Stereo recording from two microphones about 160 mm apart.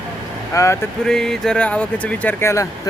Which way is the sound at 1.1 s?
5° left (ahead or behind).